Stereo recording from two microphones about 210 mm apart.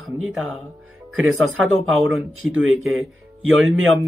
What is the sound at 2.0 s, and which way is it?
Speech, centre (ahead or behind).